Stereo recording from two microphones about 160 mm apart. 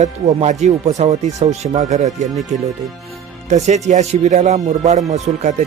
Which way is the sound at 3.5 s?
45° right (ahead or behind).